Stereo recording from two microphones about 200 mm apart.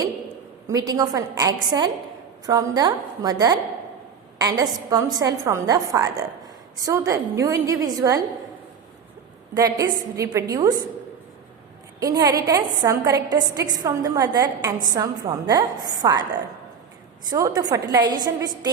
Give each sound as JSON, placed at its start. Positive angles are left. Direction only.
{"t": 0.7, "sound": "a woman's voice", "side_deg": -20}
{"t": 9.6, "sound": "a woman's voice", "side_deg": -20}
{"t": 11.9, "sound": "a woman's voice", "side_deg": -20}
{"t": 17.2, "sound": "a woman's voice", "side_deg": -20}